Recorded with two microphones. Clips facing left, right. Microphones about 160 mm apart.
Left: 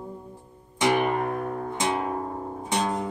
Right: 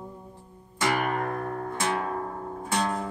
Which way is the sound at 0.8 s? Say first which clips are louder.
Left 4 dB; 20° left (ahead or behind).